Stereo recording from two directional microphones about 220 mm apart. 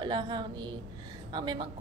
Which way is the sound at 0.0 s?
20° right (ahead or behind).